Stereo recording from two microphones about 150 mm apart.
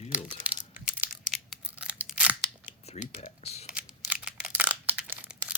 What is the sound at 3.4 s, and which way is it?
Speech, 45° left (ahead or behind).